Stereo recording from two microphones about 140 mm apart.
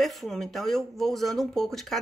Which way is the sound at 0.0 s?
Centre (ahead or behind).